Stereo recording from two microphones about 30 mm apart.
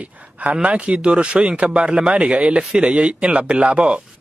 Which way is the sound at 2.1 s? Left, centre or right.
Right.